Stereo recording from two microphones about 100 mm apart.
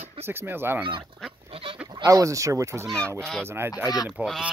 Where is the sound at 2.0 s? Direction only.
35° right (ahead or behind).